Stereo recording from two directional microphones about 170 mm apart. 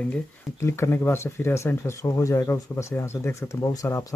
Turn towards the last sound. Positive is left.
turn(degrees=20)  # may be behind; listen again after turning